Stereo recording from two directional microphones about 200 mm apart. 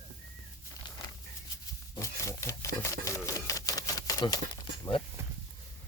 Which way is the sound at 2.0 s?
15° left (ahead or behind).